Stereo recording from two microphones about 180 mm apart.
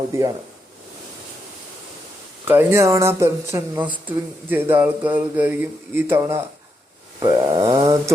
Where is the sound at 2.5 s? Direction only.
15° right (ahead or behind).